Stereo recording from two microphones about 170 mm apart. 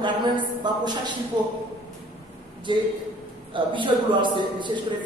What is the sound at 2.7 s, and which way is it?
Speech, 30° right (ahead or behind).